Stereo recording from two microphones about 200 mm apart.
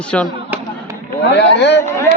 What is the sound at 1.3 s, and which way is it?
Speech, 60° left (ahead or behind).